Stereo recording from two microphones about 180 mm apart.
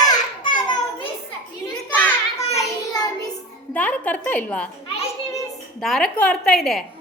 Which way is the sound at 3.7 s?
10° left (ahead or behind).